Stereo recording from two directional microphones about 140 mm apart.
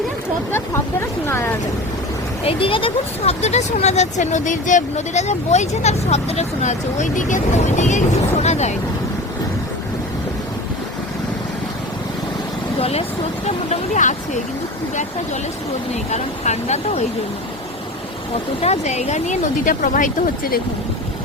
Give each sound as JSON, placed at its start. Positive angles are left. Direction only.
{"t": 1.3, "sound": "speech", "side_deg": 15}
{"t": 2.4, "sound": "speech", "side_deg": 40}
{"t": 12.8, "sound": "speech", "side_deg": 45}
{"t": 13.7, "sound": "speech", "side_deg": 60}
{"t": 16.0, "sound": "speech", "side_deg": 55}
{"t": 18.6, "sound": "speech", "side_deg": 50}